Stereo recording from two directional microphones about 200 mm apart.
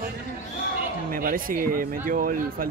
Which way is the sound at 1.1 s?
45° right (ahead or behind).